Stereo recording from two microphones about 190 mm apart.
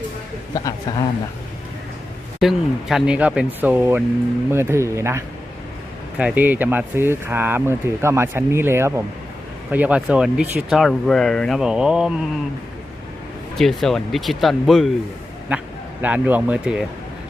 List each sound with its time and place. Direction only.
0.5 s speech: 20° left (ahead or behind)
2.4 s speech: centre (ahead or behind)
13.6 s speech: centre (ahead or behind)